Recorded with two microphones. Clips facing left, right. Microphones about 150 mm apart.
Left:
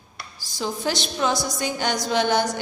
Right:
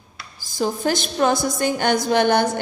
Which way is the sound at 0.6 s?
50° right (ahead or behind).